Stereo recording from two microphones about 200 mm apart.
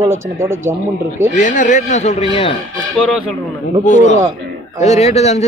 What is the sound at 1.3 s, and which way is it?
Speech, 40° left (ahead or behind).